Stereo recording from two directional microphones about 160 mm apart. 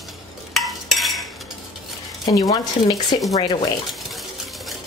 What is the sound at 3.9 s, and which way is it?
Sewing machine, centre (ahead or behind).